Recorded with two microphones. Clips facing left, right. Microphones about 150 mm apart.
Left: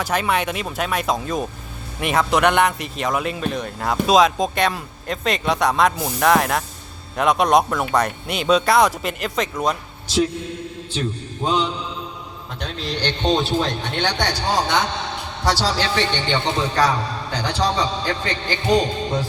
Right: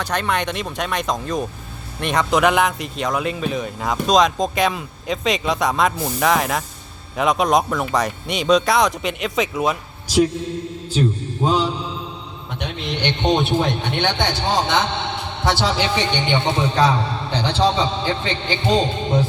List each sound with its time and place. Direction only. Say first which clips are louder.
0.0 s a man's voice: left 1 dB; 10° left (ahead or behind)
11.4 s a man's voice: right 2 dB; 5° right (ahead or behind)
12.6 s speech: right 1 dB; 20° right (ahead or behind)